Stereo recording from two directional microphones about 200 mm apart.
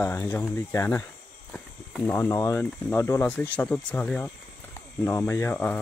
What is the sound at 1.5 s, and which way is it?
Walk, 5° left (ahead or behind).